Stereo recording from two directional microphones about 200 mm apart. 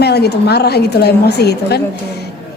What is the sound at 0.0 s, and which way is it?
Speech, 55° left (ahead or behind).